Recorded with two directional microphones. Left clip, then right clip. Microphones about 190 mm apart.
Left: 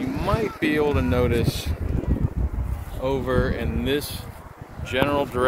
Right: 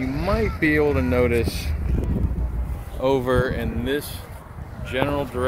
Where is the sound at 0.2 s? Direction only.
Centre (ahead or behind).